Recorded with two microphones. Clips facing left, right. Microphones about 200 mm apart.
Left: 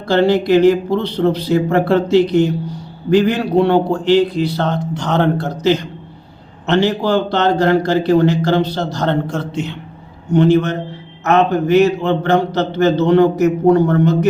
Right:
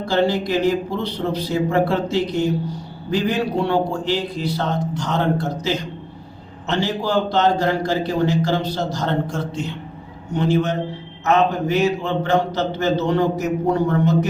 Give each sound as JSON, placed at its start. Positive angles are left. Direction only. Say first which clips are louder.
{"t": 0.1, "sound": "a man's voice", "louder": "left 7 dB", "side_deg": 70}